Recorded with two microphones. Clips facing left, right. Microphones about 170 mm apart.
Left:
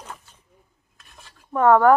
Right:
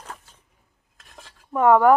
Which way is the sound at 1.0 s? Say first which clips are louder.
Right 3 dB; 90° right.